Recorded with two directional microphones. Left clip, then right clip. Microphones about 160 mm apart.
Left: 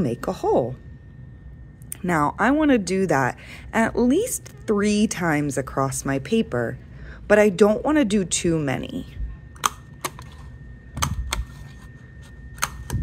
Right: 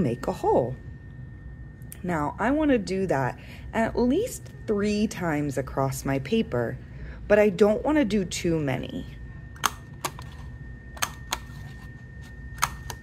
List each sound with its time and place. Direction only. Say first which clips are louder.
0.0 s speech: left 2 dB; 20° left (ahead or behind)
2.0 s speech: left 7 dB; 40° left (ahead or behind)